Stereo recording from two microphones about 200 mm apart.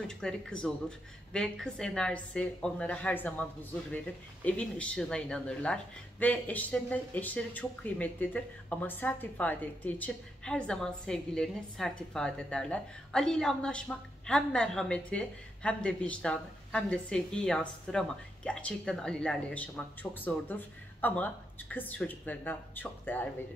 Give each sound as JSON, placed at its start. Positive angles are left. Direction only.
{"t": 0.1, "sound": "speech", "side_deg": 5}
{"t": 4.5, "sound": "speech", "side_deg": 5}